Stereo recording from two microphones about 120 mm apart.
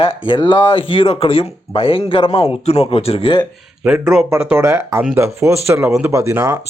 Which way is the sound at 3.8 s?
10° right (ahead or behind).